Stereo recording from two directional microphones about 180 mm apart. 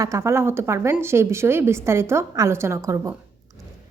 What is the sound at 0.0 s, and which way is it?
A woman's voice, 15° right (ahead or behind).